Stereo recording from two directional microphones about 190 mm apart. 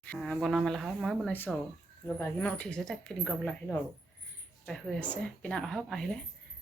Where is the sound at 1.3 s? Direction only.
10° left (ahead or behind).